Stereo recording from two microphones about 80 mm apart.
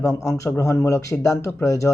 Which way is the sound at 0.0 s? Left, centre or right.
Left.